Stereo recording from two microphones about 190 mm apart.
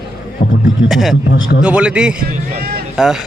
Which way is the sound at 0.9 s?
Centre (ahead or behind).